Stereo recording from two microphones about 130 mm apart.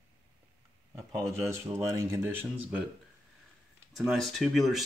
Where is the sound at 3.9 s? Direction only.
Centre (ahead or behind).